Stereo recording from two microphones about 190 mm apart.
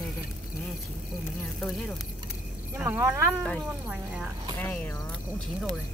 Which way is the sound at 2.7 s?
15° right (ahead or behind).